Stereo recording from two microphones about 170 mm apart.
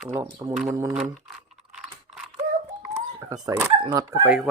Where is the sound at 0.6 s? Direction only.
20° right (ahead or behind).